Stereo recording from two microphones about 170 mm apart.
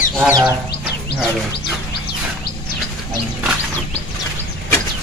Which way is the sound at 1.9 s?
65° left (ahead or behind).